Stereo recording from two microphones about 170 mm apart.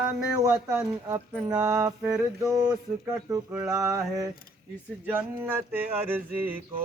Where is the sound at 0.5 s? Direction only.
5° right (ahead or behind).